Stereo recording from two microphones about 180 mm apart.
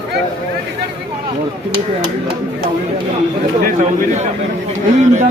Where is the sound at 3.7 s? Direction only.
45° right (ahead or behind).